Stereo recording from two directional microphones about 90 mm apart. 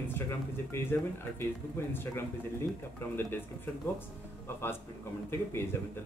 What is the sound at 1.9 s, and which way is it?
Speech, 25° left (ahead or behind).